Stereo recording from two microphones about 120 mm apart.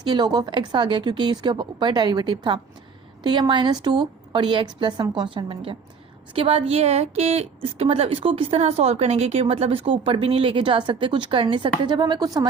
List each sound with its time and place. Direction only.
0.0 s a woman's voice: 35° right (ahead or behind)